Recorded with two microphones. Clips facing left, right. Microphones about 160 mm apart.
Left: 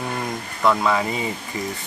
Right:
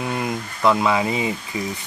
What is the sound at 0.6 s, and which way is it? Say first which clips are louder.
Speech: right 1 dB; 10° right (ahead or behind).